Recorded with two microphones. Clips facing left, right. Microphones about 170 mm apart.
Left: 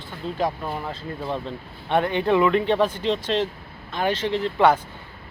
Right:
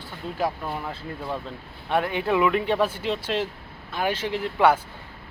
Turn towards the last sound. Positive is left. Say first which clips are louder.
# left 2 dB
turn(degrees=-10)  # may be behind; listen again after turning